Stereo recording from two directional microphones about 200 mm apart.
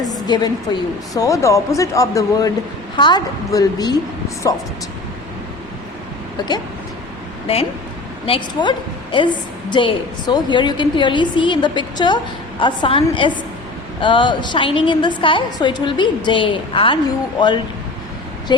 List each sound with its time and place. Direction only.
0.0 s a sound: 20° left (ahead or behind)
1.1 s a woman's voice: 15° left (ahead or behind)
7.4 s a woman's voice: 30° left (ahead or behind)